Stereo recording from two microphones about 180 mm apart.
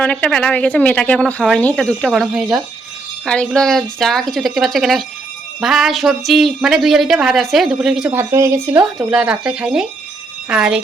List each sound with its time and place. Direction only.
0.0 s speech: 5° left (ahead or behind)
8.1 s speech: 15° right (ahead or behind)